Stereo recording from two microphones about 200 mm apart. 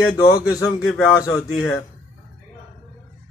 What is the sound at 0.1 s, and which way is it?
Speech, 15° left (ahead or behind).